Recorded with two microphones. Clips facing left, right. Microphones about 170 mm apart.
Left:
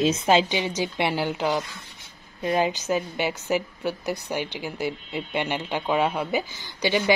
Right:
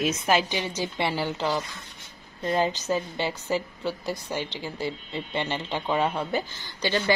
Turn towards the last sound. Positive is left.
turn(degrees=15)  # may be behind; listen again after turning